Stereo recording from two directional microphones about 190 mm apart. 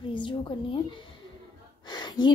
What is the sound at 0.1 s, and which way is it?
Speech, 25° left (ahead or behind).